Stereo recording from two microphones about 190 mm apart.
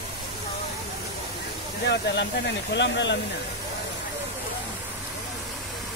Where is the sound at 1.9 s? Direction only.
65° left (ahead or behind).